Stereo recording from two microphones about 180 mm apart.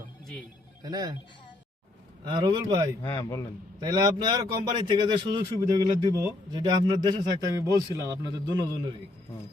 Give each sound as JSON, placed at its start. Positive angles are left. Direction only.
{"t": 0.8, "sound": "speech", "side_deg": -20}
{"t": 2.2, "sound": "speech", "side_deg": -25}
{"t": 3.0, "sound": "a man's voice", "side_deg": 15}
{"t": 3.8, "sound": "speech", "side_deg": -20}